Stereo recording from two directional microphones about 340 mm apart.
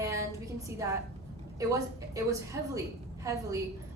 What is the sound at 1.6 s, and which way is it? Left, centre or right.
A woman's voice, centre.